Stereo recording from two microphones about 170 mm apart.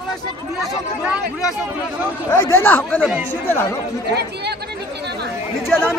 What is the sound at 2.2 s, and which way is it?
Speech, 15° left (ahead or behind).